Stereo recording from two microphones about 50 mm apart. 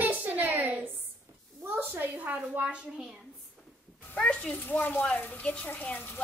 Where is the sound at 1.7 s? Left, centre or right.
Right.